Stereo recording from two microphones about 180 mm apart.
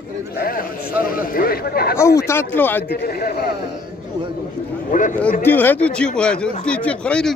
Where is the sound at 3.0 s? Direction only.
60° left (ahead or behind).